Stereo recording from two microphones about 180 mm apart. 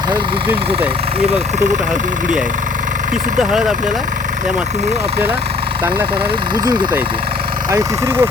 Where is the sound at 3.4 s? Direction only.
Centre (ahead or behind).